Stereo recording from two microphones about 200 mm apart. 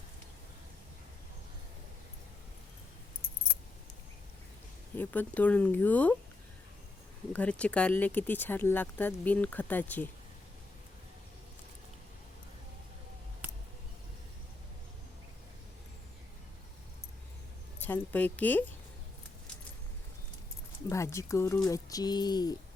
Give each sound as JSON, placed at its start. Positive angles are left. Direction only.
{"t": 4.9, "sound": "speech", "side_deg": 10}
{"t": 7.3, "sound": "speech", "side_deg": 5}
{"t": 17.7, "sound": "speech", "side_deg": 10}
{"t": 20.9, "sound": "speech", "side_deg": 15}